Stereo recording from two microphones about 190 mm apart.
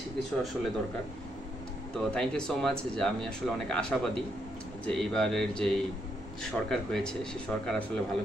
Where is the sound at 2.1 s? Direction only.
5° left (ahead or behind).